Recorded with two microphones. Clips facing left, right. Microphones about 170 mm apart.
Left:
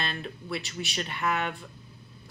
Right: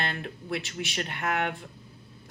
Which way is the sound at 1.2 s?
60° right (ahead or behind).